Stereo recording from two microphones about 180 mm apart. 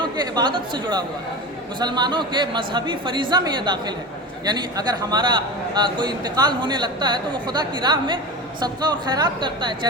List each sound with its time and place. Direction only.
0.0 s a man's voice: 25° right (ahead or behind)